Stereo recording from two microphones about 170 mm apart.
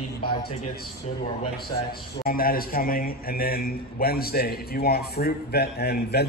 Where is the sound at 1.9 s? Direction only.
60° left (ahead or behind).